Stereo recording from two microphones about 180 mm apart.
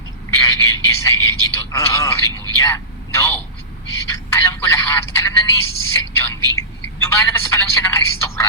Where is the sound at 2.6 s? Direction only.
15° left (ahead or behind).